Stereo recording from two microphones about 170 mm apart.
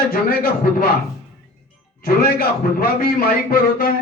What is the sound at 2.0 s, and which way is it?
A man's voice, 60° left (ahead or behind).